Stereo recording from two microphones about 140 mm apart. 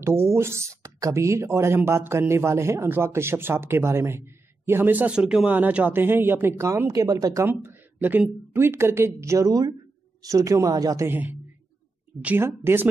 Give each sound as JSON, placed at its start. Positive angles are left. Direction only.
{"t": 0.0, "sound": "speech", "side_deg": -20}
{"t": 7.4, "sound": "speech", "side_deg": -15}
{"t": 11.1, "sound": "speech", "side_deg": -15}